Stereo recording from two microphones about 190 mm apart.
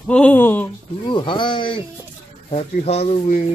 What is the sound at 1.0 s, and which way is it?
Speech, 25° left (ahead or behind).